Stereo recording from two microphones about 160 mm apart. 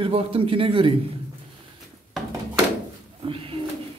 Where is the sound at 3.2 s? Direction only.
35° right (ahead or behind).